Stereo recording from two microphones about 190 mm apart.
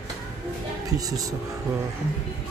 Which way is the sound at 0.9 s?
20° right (ahead or behind).